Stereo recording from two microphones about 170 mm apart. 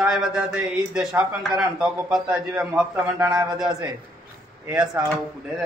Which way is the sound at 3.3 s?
20° right (ahead or behind).